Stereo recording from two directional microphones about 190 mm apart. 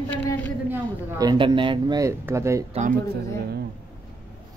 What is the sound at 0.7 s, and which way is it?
Speech, 20° right (ahead or behind).